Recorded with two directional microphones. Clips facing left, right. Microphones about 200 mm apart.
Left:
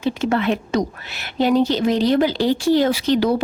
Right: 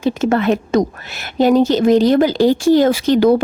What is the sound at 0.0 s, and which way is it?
Speech, 45° right (ahead or behind).